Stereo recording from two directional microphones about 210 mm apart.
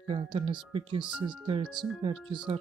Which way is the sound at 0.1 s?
20° right (ahead or behind).